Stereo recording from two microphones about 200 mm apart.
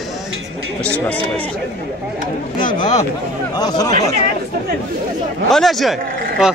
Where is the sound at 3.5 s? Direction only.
20° left (ahead or behind).